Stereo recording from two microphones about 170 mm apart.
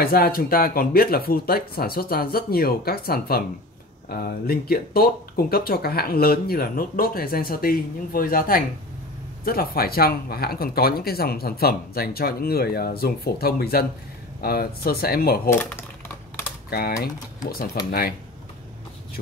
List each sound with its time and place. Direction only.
0.0 s speech: 60° left (ahead or behind)
15.5 s speech: 15° left (ahead or behind)
16.7 s speech: 65° left (ahead or behind)